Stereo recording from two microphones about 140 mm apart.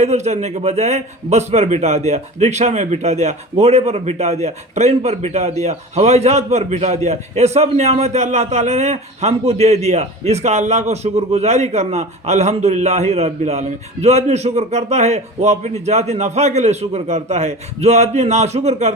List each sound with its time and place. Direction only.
0.0 s a man's voice: 55° right (ahead or behind)